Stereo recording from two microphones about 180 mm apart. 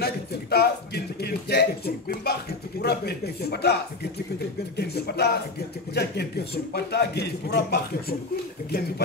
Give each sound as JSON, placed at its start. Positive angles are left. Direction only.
{"t": 0.0, "sound": "a man's voice", "side_deg": 60}